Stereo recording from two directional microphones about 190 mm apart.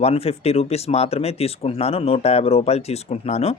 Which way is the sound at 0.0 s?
30° left (ahead or behind).